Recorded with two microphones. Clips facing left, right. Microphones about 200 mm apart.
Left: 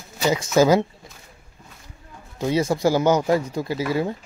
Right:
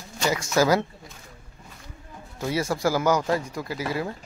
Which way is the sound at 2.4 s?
20° left (ahead or behind).